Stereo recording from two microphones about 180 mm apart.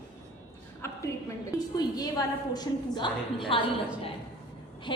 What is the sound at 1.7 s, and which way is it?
A woman's voice, 20° left (ahead or behind).